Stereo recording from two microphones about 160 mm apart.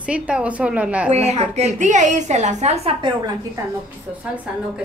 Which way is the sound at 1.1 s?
40° right (ahead or behind).